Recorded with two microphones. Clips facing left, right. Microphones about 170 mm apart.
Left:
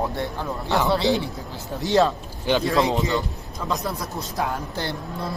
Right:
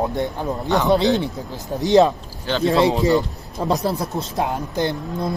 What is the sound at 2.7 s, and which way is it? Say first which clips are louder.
A man's voice: right 10 dB; 30° right (ahead or behind).